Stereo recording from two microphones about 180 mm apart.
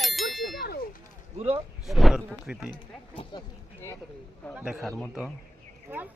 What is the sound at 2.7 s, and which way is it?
Speech, 25° left (ahead or behind).